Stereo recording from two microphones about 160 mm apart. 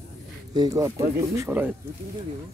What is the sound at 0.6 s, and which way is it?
Speech, 25° right (ahead or behind).